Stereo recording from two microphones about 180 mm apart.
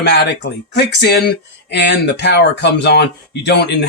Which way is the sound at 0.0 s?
70° left (ahead or behind).